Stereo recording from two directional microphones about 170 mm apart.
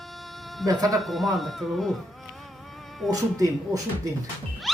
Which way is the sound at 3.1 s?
20° right (ahead or behind).